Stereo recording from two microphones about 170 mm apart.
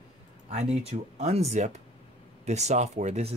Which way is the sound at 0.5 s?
40° right (ahead or behind).